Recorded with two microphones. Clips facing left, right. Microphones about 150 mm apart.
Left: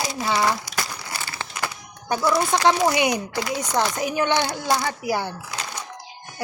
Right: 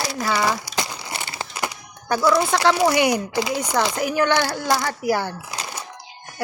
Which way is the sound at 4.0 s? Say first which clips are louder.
Right 2 dB; 20° left (ahead or behind).